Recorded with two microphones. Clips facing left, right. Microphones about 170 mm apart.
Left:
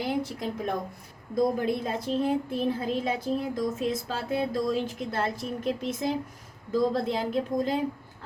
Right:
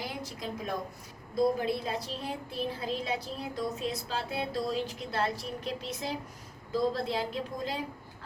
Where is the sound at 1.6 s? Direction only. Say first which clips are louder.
Left 4 dB; 50° left (ahead or behind).